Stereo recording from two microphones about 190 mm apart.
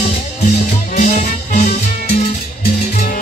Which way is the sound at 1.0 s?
40° left (ahead or behind).